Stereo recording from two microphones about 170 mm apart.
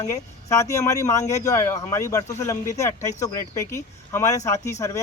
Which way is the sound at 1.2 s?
45° left (ahead or behind).